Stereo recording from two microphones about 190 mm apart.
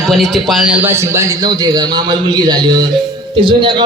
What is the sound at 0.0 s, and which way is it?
A man's voice, centre (ahead or behind).